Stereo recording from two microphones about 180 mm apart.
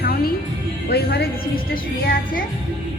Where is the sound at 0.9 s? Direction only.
60° left (ahead or behind).